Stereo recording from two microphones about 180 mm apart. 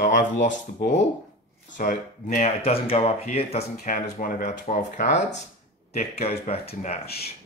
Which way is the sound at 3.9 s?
50° left (ahead or behind).